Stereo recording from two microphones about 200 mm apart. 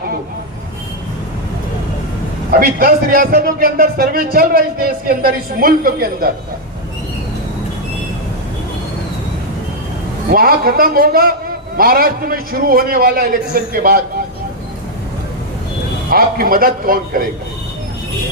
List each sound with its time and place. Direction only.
2.5 s a man's voice: 45° right (ahead or behind)
10.3 s a man's voice: 50° right (ahead or behind)
16.0 s a man's voice: 45° right (ahead or behind)